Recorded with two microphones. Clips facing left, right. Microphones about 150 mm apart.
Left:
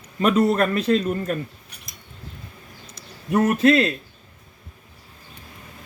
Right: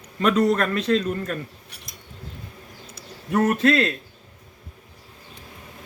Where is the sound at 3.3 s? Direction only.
20° left (ahead or behind).